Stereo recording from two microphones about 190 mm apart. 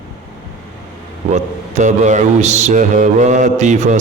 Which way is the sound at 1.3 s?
40° right (ahead or behind).